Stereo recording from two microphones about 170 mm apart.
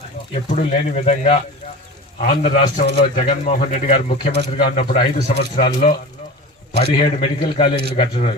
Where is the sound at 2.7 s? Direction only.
45° left (ahead or behind).